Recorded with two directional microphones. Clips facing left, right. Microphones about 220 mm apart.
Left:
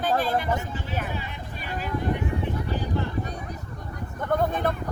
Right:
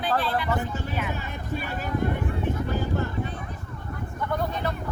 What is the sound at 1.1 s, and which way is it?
Speech, 45° right (ahead or behind).